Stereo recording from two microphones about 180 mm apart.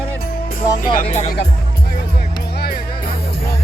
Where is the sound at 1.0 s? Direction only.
35° left (ahead or behind).